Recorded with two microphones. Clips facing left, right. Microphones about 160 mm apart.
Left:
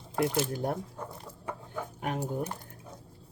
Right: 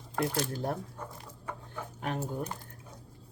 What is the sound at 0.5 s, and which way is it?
Speech, 15° left (ahead or behind).